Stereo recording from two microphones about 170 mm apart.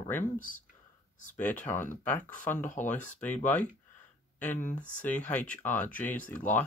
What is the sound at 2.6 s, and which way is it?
Speech, 45° left (ahead or behind).